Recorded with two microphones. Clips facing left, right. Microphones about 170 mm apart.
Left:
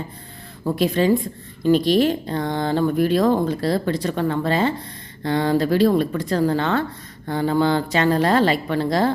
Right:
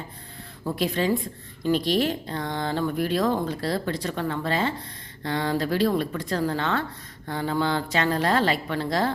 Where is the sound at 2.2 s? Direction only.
40° left (ahead or behind).